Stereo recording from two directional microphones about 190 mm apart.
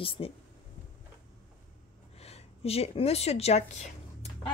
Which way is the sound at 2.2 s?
30° left (ahead or behind).